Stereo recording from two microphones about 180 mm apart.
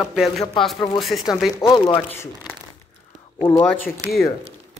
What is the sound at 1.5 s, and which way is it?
Speech, 25° left (ahead or behind).